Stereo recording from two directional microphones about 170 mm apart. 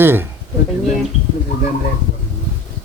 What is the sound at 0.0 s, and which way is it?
Speech, 10° right (ahead or behind).